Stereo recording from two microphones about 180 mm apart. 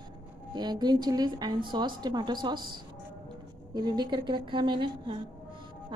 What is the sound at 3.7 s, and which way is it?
A woman's voice, 25° right (ahead or behind).